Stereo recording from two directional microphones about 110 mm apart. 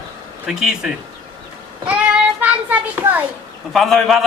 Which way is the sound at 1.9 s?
10° right (ahead or behind).